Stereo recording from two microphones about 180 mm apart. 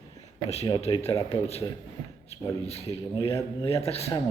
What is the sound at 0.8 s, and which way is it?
Speech, 30° left (ahead or behind).